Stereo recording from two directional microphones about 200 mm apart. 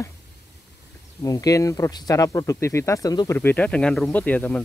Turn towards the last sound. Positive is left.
turn(degrees=10)  # may be behind; listen again after turning